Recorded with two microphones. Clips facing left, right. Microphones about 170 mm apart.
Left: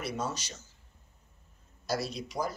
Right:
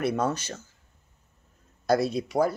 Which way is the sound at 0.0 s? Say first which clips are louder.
Right 9 dB; 55° right (ahead or behind).